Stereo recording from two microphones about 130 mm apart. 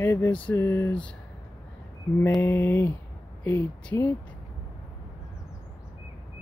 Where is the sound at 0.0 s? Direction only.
20° left (ahead or behind).